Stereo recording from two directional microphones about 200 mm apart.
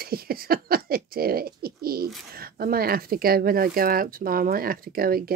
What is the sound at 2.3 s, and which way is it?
Speech, 50° right (ahead or behind).